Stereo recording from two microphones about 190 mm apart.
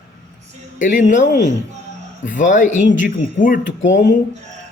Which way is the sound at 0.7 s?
40° left (ahead or behind).